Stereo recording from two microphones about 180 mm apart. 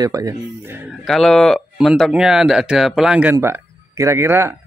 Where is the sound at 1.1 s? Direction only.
Centre (ahead or behind).